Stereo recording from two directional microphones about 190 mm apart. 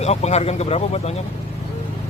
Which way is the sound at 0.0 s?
35° left (ahead or behind).